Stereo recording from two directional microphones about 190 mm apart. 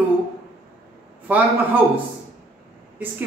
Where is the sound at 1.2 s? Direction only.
10° right (ahead or behind).